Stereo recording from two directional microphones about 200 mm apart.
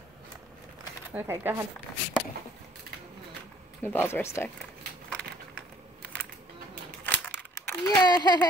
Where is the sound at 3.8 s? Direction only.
10° left (ahead or behind).